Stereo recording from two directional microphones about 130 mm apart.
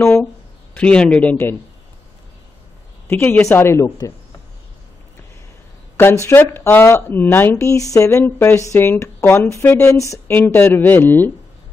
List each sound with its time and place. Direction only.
0.0 s a sound: 10° left (ahead or behind)
0.7 s speech: 10° left (ahead or behind)
3.1 s speech: 15° left (ahead or behind)
6.2 s speech: 20° left (ahead or behind)